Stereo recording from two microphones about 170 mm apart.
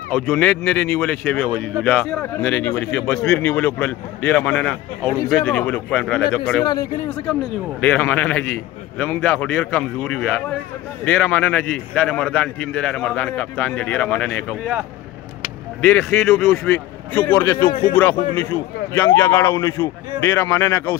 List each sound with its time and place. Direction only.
0.1 s a man's voice: 10° left (ahead or behind)
6.6 s speech: 20° left (ahead or behind)
7.8 s a man's voice: 10° left (ahead or behind)
15.8 s a man's voice: 15° left (ahead or behind)
17.6 s speech: 25° left (ahead or behind)
18.4 s a man's voice: 10° left (ahead or behind)